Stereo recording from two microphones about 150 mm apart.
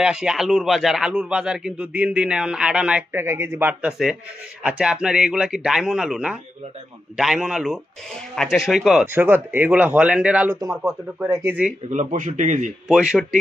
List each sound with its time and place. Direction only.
0.0 s speech: 5° right (ahead or behind)
9.1 s speech: 15° right (ahead or behind)
11.2 s speech: 20° right (ahead or behind)
11.9 s a man's voice: 55° right (ahead or behind)
12.8 s speech: 5° right (ahead or behind)